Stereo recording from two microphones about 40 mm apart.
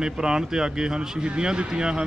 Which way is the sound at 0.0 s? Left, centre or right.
Centre.